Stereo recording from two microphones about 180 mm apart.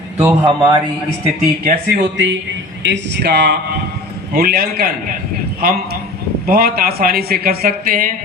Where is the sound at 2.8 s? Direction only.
70° right (ahead or behind).